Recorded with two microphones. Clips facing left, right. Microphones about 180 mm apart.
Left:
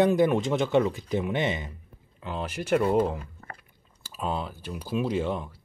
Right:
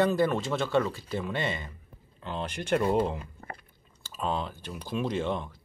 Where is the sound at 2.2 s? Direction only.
5° left (ahead or behind).